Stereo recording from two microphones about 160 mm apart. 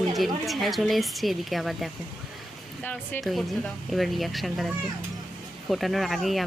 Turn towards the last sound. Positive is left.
turn(degrees=0)  # may be behind; listen again after turning